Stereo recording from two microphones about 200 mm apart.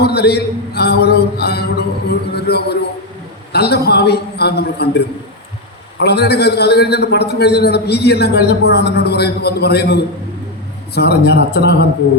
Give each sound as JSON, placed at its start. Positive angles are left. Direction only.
{"t": 0.0, "sound": "mantra", "side_deg": 55}
{"t": 3.5, "sound": "a man's voice", "side_deg": 55}